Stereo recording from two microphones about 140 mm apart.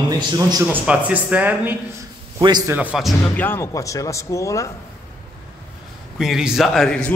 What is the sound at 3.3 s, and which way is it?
Speech, 15° left (ahead or behind).